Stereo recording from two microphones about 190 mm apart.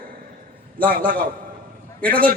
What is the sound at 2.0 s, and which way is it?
Speech, 10° left (ahead or behind).